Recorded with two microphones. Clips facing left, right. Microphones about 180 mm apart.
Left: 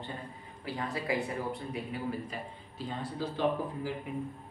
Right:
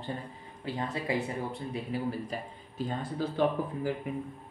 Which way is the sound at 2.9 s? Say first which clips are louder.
Right 2 dB; 55° right (ahead or behind).